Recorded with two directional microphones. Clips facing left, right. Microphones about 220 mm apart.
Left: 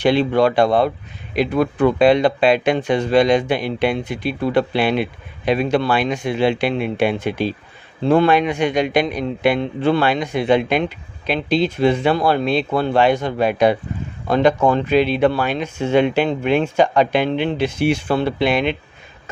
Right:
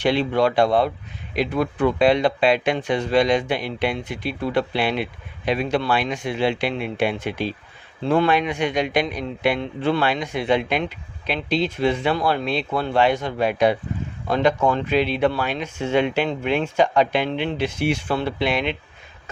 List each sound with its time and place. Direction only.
0.0 s a man's voice: 45° left (ahead or behind)